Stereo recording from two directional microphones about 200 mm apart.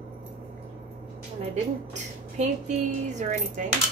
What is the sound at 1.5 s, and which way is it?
Speech, 35° right (ahead or behind).